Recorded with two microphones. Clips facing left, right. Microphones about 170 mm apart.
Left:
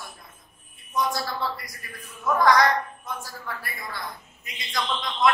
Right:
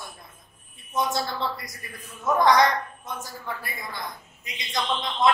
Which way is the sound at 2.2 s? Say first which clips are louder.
Even; 20° right (ahead or behind).